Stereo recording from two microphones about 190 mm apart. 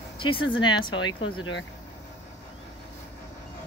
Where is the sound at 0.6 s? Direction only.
25° left (ahead or behind).